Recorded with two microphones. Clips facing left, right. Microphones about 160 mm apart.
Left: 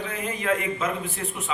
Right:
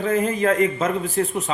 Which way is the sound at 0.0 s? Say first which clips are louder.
Right 10 dB; 45° right (ahead or behind).